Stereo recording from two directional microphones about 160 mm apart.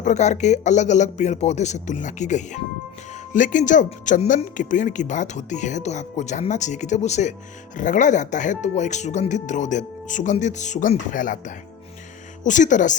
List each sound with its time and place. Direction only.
0.0 s speech: 45° left (ahead or behind)